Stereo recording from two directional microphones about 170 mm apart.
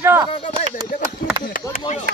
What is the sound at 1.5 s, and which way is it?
Chop, 50° left (ahead or behind).